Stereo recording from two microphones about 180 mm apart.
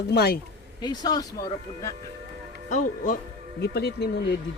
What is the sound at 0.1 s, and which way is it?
Speech, 60° left (ahead or behind).